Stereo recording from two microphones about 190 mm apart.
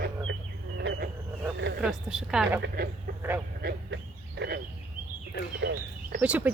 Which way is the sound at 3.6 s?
60° right (ahead or behind).